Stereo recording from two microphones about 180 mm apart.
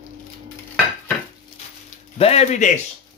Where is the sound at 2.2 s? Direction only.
35° left (ahead or behind).